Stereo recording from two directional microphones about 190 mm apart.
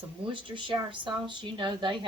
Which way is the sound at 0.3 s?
25° right (ahead or behind).